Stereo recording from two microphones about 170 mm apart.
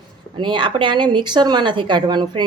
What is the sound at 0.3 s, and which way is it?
Speech, 30° right (ahead or behind).